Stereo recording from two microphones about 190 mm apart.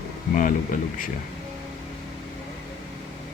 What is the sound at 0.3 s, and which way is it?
Speech, 45° left (ahead or behind).